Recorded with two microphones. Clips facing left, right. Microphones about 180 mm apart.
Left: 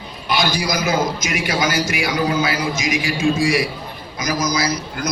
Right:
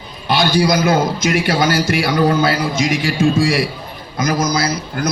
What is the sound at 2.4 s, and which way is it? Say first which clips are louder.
Speech: right 4 dB; 30° right (ahead or behind).